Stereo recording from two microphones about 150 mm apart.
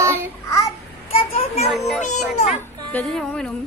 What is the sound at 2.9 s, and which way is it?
Music, 5° left (ahead or behind).